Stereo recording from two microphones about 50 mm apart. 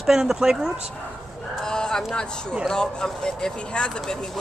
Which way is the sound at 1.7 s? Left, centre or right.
Centre.